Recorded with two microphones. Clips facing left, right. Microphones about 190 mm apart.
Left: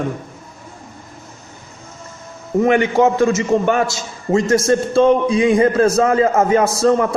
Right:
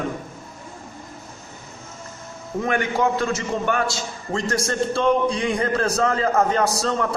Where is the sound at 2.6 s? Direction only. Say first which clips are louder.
Left 8 dB; 15° left (ahead or behind).